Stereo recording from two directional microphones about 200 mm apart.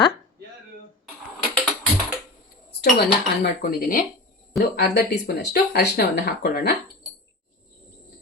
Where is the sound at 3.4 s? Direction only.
45° left (ahead or behind).